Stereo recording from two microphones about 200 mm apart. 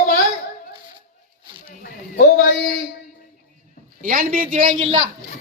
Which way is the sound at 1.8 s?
50° left (ahead or behind).